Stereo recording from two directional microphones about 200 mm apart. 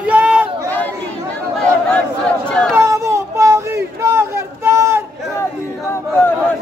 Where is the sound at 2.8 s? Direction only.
15° right (ahead or behind).